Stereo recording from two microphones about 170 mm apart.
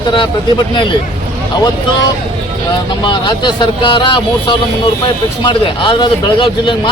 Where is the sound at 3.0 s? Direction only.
25° left (ahead or behind).